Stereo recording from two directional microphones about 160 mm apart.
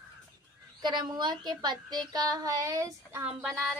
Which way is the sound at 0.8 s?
25° right (ahead or behind).